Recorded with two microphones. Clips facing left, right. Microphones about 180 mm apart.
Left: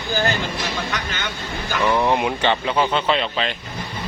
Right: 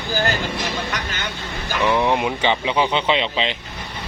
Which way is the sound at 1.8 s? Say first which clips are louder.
Even; 5° left (ahead or behind).